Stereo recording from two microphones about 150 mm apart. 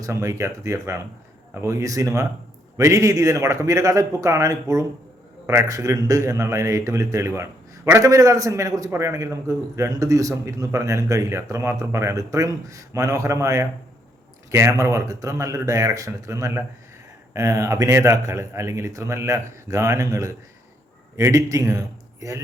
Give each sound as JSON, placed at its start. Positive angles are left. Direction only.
{"t": 0.0, "sound": "a man's voice", "side_deg": -20}